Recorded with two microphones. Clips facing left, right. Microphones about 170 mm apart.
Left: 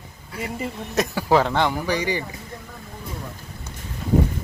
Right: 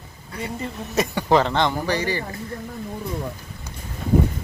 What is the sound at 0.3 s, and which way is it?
Speech, 5° left (ahead or behind).